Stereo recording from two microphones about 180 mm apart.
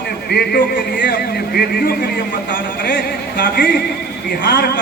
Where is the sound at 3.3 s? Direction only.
55° left (ahead or behind).